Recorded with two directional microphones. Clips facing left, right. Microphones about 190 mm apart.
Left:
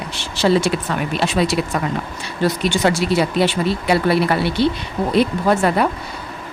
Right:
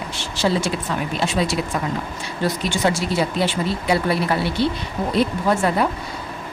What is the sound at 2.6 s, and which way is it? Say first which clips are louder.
Speech: left 4 dB; 70° left (ahead or behind).